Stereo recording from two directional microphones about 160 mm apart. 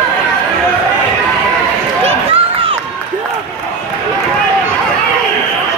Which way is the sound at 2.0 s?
40° right (ahead or behind).